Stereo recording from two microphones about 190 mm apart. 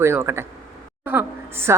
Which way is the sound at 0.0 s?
15° right (ahead or behind).